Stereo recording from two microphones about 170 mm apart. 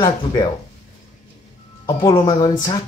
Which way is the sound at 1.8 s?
20° left (ahead or behind).